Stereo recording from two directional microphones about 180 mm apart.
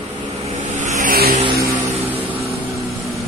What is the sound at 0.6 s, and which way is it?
Vehicle, 45° right (ahead or behind).